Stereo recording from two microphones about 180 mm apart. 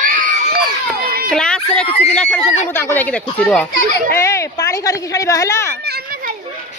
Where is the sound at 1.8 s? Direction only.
35° left (ahead or behind).